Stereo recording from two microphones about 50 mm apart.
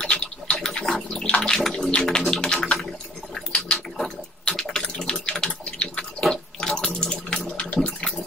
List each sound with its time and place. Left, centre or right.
0.0 s a sound: centre
1.2 s bathtub: left
1.5 s bathtub: centre
2.0 s music: centre
2.4 s a sound: centre
4.6 s water tap: centre
4.9 s a sound: centre
5.4 s water: centre
7.5 s toilet flush: left